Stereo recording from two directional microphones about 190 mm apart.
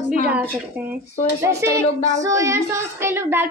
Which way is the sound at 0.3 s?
10° right (ahead or behind).